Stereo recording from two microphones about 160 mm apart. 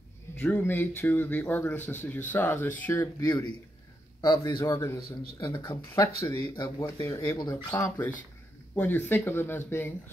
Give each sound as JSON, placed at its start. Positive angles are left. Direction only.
{"t": 0.4, "sound": "speech", "side_deg": 10}